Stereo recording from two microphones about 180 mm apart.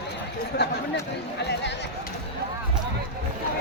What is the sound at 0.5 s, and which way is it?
Speech, 70° left (ahead or behind).